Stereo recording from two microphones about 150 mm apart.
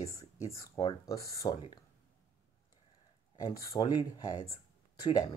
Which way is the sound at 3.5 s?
30° left (ahead or behind).